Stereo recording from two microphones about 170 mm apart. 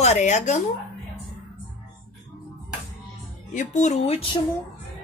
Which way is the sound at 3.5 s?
45° left (ahead or behind).